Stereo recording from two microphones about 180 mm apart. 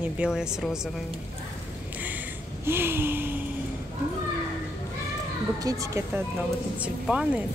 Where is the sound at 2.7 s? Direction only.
10° right (ahead or behind).